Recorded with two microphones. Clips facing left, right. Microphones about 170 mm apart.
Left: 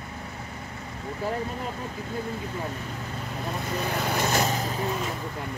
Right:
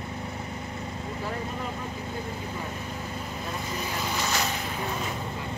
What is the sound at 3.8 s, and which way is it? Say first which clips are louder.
Vehicle: left 5 dB; 55° left (ahead or behind).